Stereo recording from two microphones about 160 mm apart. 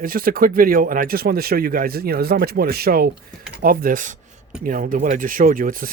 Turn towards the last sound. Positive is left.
turn(degrees=-60)  # may be behind; listen again after turning